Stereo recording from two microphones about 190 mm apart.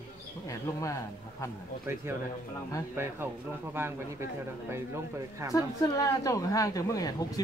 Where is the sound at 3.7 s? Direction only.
10° right (ahead or behind).